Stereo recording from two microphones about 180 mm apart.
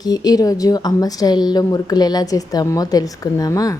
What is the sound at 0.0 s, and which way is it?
A woman's voice, 20° left (ahead or behind).